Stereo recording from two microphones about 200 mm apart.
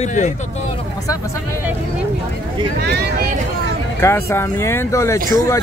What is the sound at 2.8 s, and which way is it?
Vehicle, 55° right (ahead or behind).